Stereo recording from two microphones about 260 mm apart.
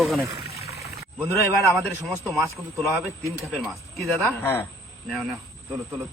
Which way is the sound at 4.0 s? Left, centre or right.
Centre.